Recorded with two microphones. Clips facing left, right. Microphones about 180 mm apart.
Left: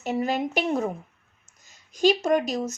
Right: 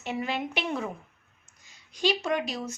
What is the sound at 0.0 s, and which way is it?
A woman's voice, 40° left (ahead or behind).